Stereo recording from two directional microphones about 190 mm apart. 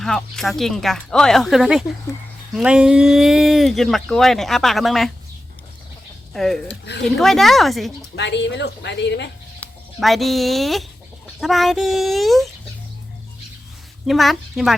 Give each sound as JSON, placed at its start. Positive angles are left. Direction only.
{"t": 0.0, "sound": "speech", "side_deg": 0}
{"t": 6.3, "sound": "speech", "side_deg": 0}
{"t": 6.7, "sound": "speech", "side_deg": 65}
{"t": 7.0, "sound": "speech", "side_deg": 0}
{"t": 8.1, "sound": "speech", "side_deg": 65}
{"t": 9.6, "sound": "speech", "side_deg": 0}
{"t": 14.1, "sound": "speech", "side_deg": 0}